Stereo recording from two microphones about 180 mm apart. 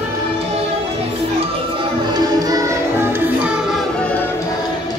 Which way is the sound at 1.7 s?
20° right (ahead or behind).